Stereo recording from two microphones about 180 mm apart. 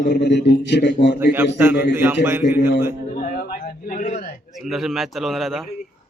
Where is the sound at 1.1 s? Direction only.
10° right (ahead or behind).